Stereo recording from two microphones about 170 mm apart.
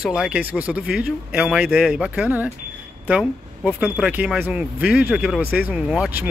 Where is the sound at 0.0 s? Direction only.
5° right (ahead or behind).